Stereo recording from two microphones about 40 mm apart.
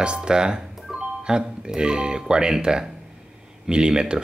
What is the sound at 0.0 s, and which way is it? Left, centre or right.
Speech, right.